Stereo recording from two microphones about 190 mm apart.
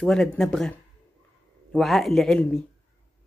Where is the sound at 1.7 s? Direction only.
Centre (ahead or behind).